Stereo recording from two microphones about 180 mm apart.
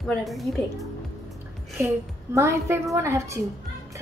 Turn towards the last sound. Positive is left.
turn(degrees=-15)  # may be behind; listen again after turning